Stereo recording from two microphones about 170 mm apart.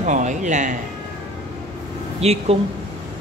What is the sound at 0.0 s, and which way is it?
Speech, 45° right (ahead or behind).